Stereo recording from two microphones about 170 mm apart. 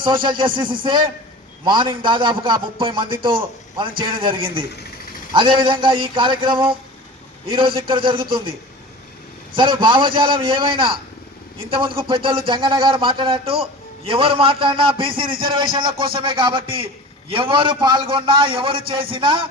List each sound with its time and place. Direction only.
0.0 s a man's voice: 30° right (ahead or behind)
7.9 s speech: 30° right (ahead or behind)
9.6 s speech: 30° right (ahead or behind)
11.9 s a man's voice: 30° right (ahead or behind)